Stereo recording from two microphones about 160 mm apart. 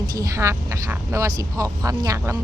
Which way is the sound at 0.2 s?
20° right (ahead or behind).